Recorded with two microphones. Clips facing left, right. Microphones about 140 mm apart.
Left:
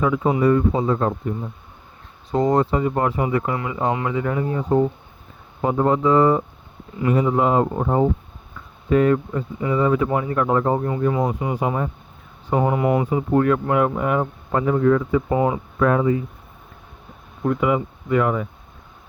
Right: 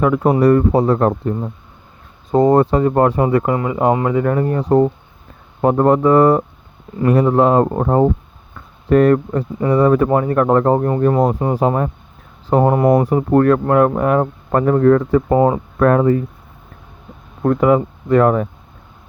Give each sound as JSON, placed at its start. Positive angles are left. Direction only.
{"t": 0.0, "sound": "speech", "side_deg": -60}
{"t": 3.5, "sound": "speech", "side_deg": -40}
{"t": 5.6, "sound": "speech", "side_deg": -55}
{"t": 8.5, "sound": "a sound", "side_deg": -70}
{"t": 10.1, "sound": "speech", "side_deg": -50}
{"t": 13.1, "sound": "speech", "side_deg": -55}
{"t": 17.4, "sound": "speech", "side_deg": -50}